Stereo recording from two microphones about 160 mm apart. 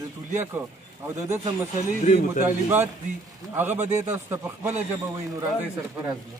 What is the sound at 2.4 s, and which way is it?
Speech, 10° right (ahead or behind).